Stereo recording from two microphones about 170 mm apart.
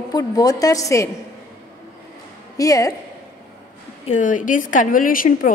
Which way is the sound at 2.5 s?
20° left (ahead or behind).